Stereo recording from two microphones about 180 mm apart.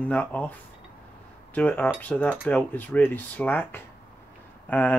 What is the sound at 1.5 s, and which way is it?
Speech, 10° left (ahead or behind).